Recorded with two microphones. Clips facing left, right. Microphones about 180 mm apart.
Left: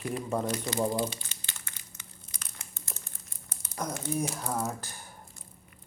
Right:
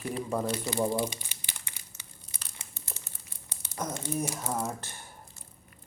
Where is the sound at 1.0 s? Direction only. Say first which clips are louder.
Even; 15° right (ahead or behind).